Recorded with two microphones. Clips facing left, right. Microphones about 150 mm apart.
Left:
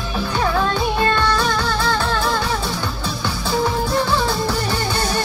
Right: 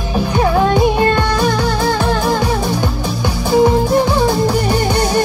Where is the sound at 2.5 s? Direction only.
45° right (ahead or behind).